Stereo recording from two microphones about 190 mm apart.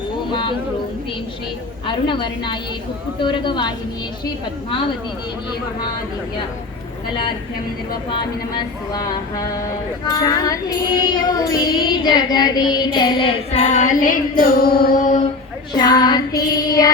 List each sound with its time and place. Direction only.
0.3 s music: 25° left (ahead or behind)
1.9 s music: 25° left (ahead or behind)
8.1 s music: 20° left (ahead or behind)
10.1 s music: 20° left (ahead or behind); by 15.2 s 45° left (ahead or behind)
15.7 s music: 20° left (ahead or behind)